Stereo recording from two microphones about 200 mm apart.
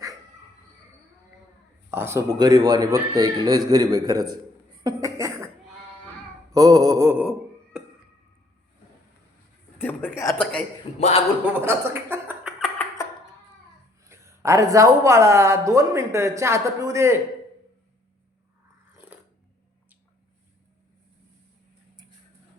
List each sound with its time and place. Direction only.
1.9 s a woman's voice: 10° right (ahead or behind)
4.8 s chuckle: 20° right (ahead or behind)
6.5 s speech: 15° right (ahead or behind)
9.7 s speech: 10° left (ahead or behind)
11.6 s a sound: 10° right (ahead or behind)
14.0 s a woman's voice: 15° right (ahead or behind)
18.9 s a sound: 5° right (ahead or behind)